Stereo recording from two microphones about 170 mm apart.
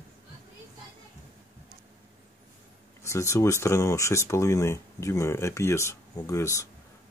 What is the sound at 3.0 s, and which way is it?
Speech, 15° left (ahead or behind).